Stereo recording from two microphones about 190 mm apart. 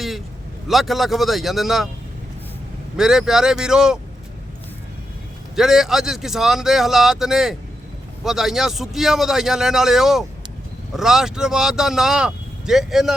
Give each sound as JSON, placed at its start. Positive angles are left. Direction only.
{"t": 0.7, "sound": "speech", "side_deg": 0}
{"t": 3.0, "sound": "speech", "side_deg": 0}
{"t": 5.5, "sound": "speech", "side_deg": 0}